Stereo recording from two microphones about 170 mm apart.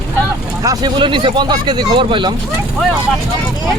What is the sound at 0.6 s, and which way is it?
Speech, 25° right (ahead or behind).